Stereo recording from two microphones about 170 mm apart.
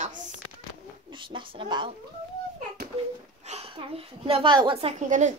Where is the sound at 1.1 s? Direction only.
30° right (ahead or behind).